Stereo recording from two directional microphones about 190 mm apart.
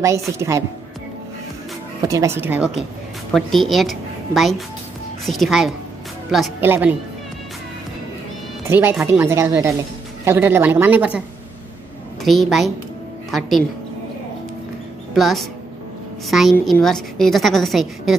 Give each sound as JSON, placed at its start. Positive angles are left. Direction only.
{"t": 0.4, "sound": "a woman's voice", "side_deg": -15}
{"t": 2.0, "sound": "a woman's voice", "side_deg": -15}
{"t": 8.6, "sound": "a woman's voice", "side_deg": -10}
{"t": 15.1, "sound": "a woman's voice", "side_deg": 0}